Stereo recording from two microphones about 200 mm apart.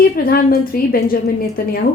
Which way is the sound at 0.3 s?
45° left (ahead or behind).